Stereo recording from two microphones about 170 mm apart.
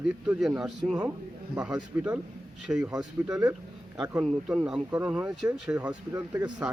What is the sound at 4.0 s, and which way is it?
Speech, 5° right (ahead or behind).